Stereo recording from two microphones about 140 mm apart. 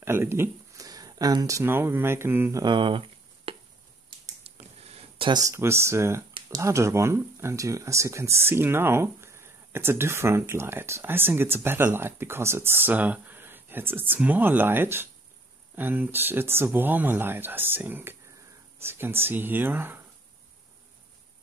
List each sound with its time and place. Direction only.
0.0 s speech: 20° right (ahead or behind)
2.6 s speech: 35° right (ahead or behind)
3.5 s chop: 45° right (ahead or behind)
4.8 s a sound: 50° right (ahead or behind)
5.3 s speech: 20° right (ahead or behind)